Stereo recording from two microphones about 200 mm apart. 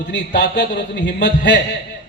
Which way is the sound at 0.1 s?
60° left (ahead or behind).